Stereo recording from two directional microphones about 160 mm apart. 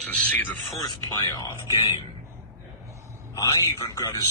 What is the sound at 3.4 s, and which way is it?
Speech, 25° left (ahead or behind).